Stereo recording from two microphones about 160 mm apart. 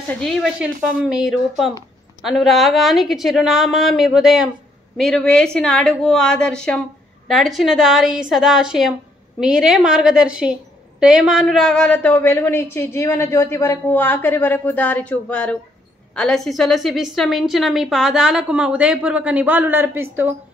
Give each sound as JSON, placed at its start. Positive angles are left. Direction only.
{"t": 0.2, "sound": "a woman's voice", "side_deg": 0}